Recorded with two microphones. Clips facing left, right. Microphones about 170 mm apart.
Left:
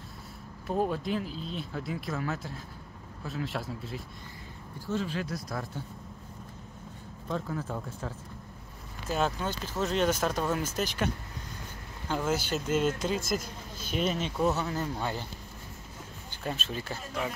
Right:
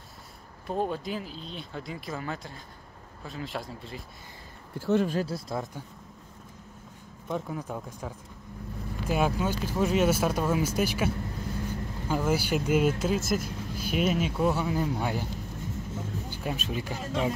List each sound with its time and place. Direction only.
0.7 s speech: centre (ahead or behind)
4.7 s speech: 70° right (ahead or behind)
5.2 s speech: 25° right (ahead or behind)
7.2 s speech: 15° right (ahead or behind)
16.3 s speech: 10° right (ahead or behind)